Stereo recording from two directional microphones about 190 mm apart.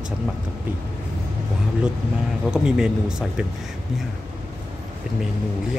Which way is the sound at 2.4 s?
5° right (ahead or behind).